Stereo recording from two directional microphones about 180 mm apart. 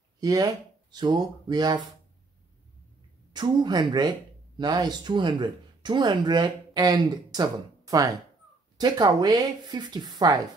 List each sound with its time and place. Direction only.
0.2 s speech: 20° right (ahead or behind)
3.3 s speech: 25° right (ahead or behind)